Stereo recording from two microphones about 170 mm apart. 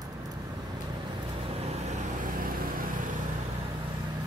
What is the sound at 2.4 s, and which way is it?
Vehicle, 60° right (ahead or behind).